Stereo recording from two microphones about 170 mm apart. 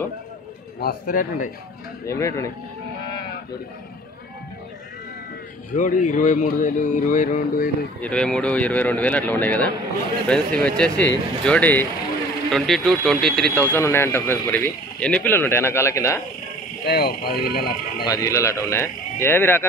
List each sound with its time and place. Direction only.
0.7 s speech: 60° left (ahead or behind)
2.0 s speech: 15° left (ahead or behind)
5.8 s speech: 50° left (ahead or behind)
8.0 s speech: 5° left (ahead or behind)
13.7 s speech: 15° left (ahead or behind)
16.8 s speech: 65° left (ahead or behind)
18.0 s speech: 20° left (ahead or behind)